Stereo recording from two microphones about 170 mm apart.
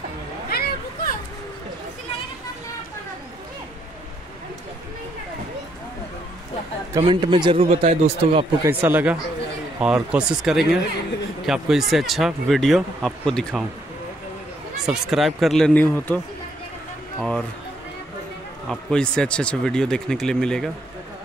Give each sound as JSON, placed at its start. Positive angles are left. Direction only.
{"t": 0.5, "sound": "a sound", "side_deg": 65}
{"t": 7.0, "sound": "speech", "side_deg": -30}
{"t": 8.6, "sound": "speech", "side_deg": -10}
{"t": 14.9, "sound": "speech", "side_deg": 0}
{"t": 17.2, "sound": "speech", "side_deg": 0}
{"t": 18.7, "sound": "speech", "side_deg": 5}